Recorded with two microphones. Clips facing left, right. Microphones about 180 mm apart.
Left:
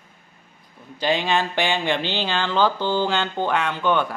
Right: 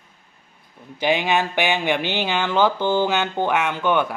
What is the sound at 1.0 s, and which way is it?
Speech, 15° right (ahead or behind).